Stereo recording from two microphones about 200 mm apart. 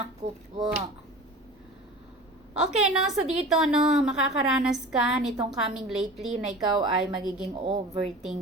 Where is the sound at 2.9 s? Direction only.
Centre (ahead or behind).